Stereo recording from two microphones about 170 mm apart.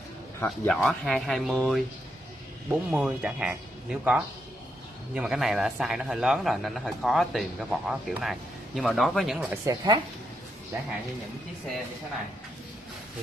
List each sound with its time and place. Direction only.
0.5 s a man's voice: centre (ahead or behind)
9.5 s a woman's voice: 20° right (ahead or behind)